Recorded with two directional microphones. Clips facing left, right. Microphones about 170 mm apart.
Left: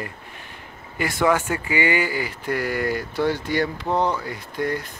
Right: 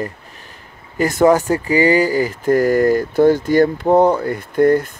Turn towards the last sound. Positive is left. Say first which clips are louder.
# right 13 dB
turn(degrees=-50)  # may be behind; listen again after turning